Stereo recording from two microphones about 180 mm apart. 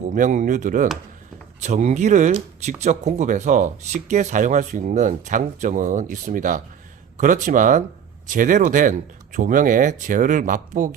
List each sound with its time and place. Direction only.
0.1 s speech: 45° right (ahead or behind)